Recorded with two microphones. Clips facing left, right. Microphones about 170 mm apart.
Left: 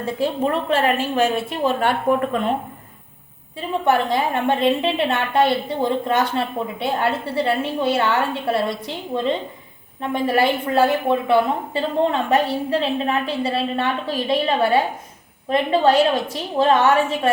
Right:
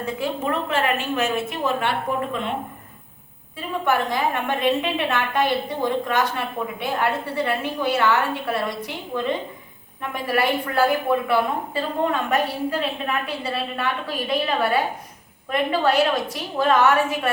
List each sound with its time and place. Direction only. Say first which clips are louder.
0.7 s a woman's voice: left 4 dB; 35° left (ahead or behind)
1.9 s speech: left 6 dB; 45° left (ahead or behind)
3.8 s a woman's voice: left 3 dB; 30° left (ahead or behind)
10.0 s a woman's voice: left 4 dB; 25° left (ahead or behind)